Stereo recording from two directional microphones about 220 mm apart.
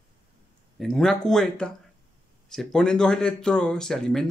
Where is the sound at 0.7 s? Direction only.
Centre (ahead or behind).